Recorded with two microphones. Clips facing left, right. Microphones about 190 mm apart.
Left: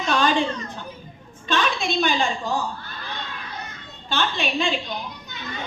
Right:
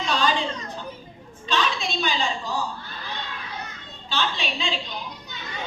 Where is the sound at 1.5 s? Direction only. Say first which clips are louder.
Left 2 dB; 50° left (ahead or behind).